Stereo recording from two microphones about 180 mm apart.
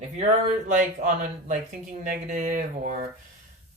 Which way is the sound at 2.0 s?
45° right (ahead or behind).